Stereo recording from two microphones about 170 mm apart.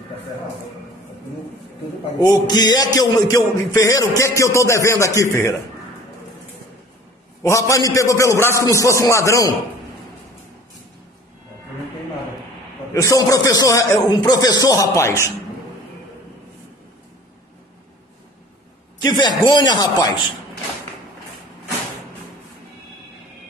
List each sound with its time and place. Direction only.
2.2 s a man's voice: 25° left (ahead or behind)
7.4 s a man's voice: 20° left (ahead or behind)
12.9 s a man's voice: 20° left (ahead or behind)
18.9 s a man's voice: 25° left (ahead or behind)